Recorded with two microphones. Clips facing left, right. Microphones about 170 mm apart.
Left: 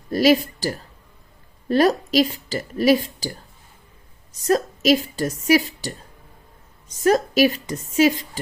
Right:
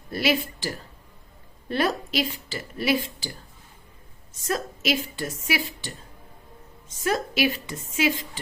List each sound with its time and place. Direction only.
0.1 s a woman's voice: 40° left (ahead or behind)
4.3 s a woman's voice: 40° left (ahead or behind)